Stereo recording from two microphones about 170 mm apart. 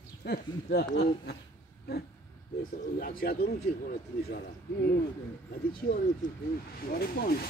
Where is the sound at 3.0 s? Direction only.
65° left (ahead or behind).